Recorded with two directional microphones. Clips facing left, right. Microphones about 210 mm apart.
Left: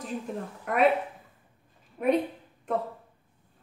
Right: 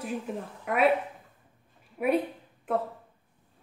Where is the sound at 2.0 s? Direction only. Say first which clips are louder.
Left 1 dB; 5° right (ahead or behind).